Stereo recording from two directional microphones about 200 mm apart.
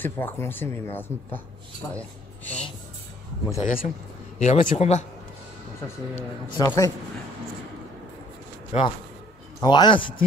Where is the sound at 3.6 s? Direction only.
45° left (ahead or behind).